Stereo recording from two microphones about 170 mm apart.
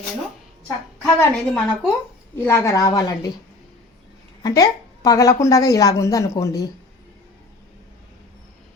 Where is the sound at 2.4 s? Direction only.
20° left (ahead or behind).